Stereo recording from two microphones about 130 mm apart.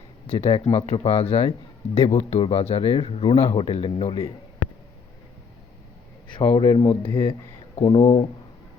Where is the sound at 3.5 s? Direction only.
40° left (ahead or behind).